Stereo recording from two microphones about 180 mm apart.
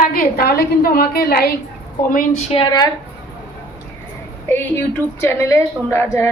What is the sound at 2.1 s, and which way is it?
Speech, 45° left (ahead or behind).